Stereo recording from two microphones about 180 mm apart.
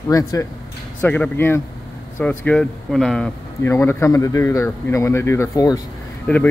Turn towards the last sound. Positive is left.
turn(degrees=10)  # may be behind; listen again after turning